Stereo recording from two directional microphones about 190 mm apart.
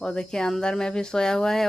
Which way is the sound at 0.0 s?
5° left (ahead or behind).